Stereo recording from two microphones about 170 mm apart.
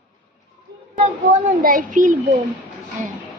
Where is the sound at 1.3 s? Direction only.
50° right (ahead or behind).